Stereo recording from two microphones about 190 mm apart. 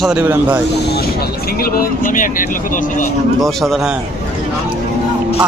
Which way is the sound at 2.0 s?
45° left (ahead or behind).